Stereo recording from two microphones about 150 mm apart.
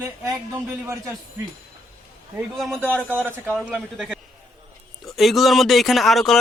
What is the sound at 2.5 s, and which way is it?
Speech, centre (ahead or behind).